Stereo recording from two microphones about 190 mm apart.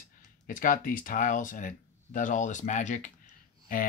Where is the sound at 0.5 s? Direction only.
45° left (ahead or behind).